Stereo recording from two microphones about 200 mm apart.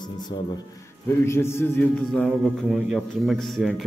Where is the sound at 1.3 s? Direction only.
15° left (ahead or behind).